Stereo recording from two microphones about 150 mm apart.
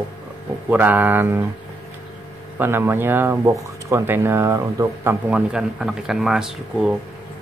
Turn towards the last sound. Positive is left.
turn(degrees=-5)  # may be behind; listen again after turning